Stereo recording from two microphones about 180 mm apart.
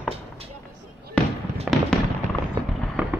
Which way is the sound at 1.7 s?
5° right (ahead or behind).